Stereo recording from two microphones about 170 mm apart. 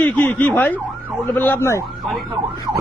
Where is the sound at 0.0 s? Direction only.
10° left (ahead or behind).